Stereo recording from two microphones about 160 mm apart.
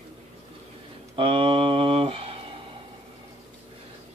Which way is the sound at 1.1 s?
35° right (ahead or behind).